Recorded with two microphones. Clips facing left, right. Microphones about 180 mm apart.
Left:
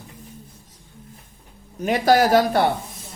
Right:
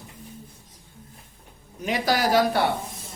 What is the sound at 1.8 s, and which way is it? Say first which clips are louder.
Speech: left 6 dB; 50° left (ahead or behind).